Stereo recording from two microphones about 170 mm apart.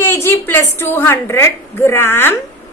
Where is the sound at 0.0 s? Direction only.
15° left (ahead or behind).